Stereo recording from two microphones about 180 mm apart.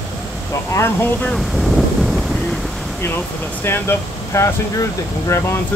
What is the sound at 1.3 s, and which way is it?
Wind noise, centre (ahead or behind).